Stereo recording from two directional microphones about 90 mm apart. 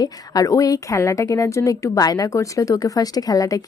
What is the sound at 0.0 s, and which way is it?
A woman's voice, 40° left (ahead or behind).